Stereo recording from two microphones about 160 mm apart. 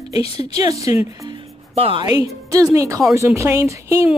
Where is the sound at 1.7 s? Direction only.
35° right (ahead or behind); by 4.1 s 15° right (ahead or behind).